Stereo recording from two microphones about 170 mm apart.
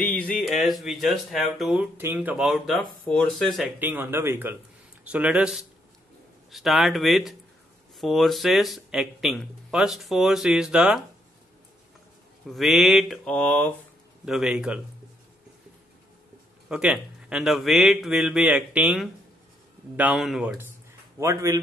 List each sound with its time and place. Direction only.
0.0 s music: 10° left (ahead or behind)
0.4 s speech: centre (ahead or behind)
3.8 s speech: 10° right (ahead or behind)
12.4 s speech: centre (ahead or behind)
14.2 s speech: 5° right (ahead or behind)
16.6 s speech: 5° right (ahead or behind)
21.2 s speech: 20° right (ahead or behind)